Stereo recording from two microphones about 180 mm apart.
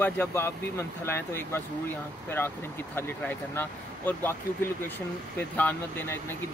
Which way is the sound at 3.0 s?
10° left (ahead or behind).